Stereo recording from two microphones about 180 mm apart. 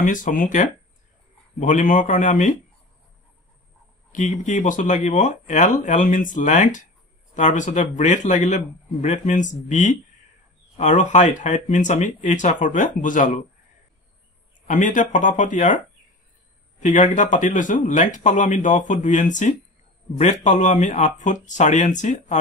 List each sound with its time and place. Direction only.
0.0 s speech: 45° left (ahead or behind)
4.1 s speech: 45° left (ahead or behind)
14.7 s speech: 45° left (ahead or behind)
16.8 s speech: 45° left (ahead or behind)